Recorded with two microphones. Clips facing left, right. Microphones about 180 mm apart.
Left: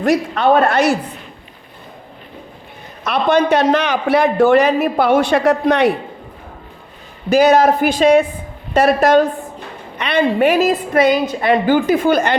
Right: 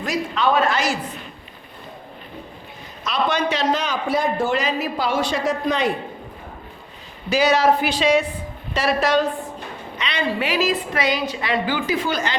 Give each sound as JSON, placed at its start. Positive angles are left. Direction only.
{"t": 0.0, "sound": "a man's voice", "side_deg": 60}
{"t": 3.0, "sound": "a man's voice", "side_deg": 55}
{"t": 7.3, "sound": "a woman's voice", "side_deg": 50}